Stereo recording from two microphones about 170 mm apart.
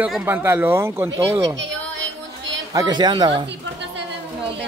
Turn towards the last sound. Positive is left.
turn(degrees=-25)  # may be behind; listen again after turning